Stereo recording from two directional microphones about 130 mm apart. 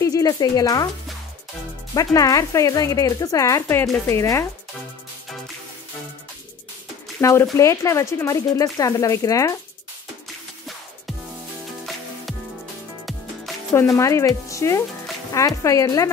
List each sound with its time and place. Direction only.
0.0 s speech: 25° left (ahead or behind)
2.0 s speech: 25° left (ahead or behind)
7.2 s speech: 20° left (ahead or behind)
13.7 s speech: 20° left (ahead or behind)